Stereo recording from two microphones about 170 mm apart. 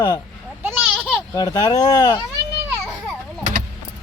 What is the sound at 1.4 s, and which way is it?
Speech, 20° left (ahead or behind).